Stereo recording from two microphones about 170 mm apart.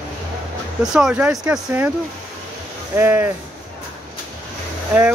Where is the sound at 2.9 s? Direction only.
10° right (ahead or behind).